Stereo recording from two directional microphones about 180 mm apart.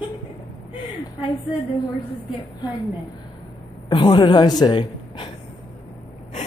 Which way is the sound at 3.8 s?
25° left (ahead or behind).